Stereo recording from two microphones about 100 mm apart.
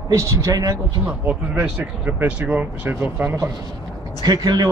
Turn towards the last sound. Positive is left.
turn(degrees=-40)  # may be behind; listen again after turning